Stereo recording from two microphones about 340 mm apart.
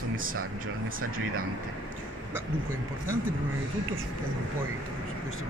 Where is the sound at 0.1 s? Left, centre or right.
Right.